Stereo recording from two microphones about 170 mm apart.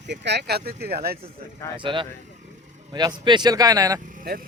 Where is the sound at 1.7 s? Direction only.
30° right (ahead or behind).